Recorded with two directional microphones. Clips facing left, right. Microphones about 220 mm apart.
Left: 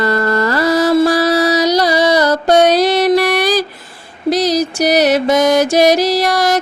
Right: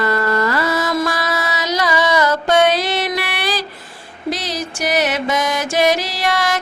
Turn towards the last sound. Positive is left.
turn(degrees=40)  # may be behind; listen again after turning